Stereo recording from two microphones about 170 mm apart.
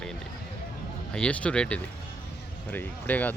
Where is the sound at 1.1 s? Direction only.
5° left (ahead or behind).